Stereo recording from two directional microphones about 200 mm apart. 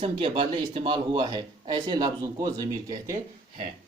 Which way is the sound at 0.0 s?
30° right (ahead or behind).